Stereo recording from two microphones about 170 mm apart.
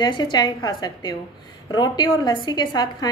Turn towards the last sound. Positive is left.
turn(degrees=25)  # may be behind; listen again after turning